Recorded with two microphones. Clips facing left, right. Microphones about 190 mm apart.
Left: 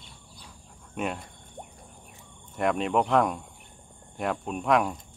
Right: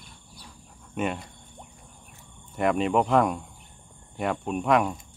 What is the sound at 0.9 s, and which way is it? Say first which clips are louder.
Speech: right 3 dB; centre (ahead or behind).